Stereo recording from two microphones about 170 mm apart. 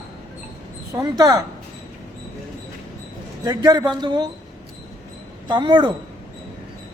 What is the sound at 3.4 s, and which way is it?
Speech, 25° right (ahead or behind).